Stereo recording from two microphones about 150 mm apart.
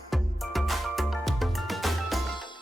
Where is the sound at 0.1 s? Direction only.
Centre (ahead or behind).